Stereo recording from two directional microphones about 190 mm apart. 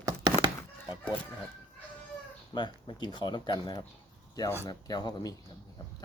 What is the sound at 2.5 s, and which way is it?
Speech, 25° left (ahead or behind).